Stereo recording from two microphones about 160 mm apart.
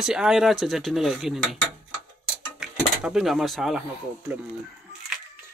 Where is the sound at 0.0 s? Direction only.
5° right (ahead or behind).